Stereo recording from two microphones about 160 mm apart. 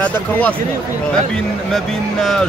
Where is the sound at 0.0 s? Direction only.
10° left (ahead or behind).